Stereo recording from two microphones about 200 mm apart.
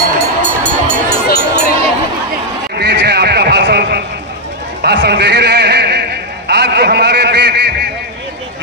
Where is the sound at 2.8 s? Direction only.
60° right (ahead or behind).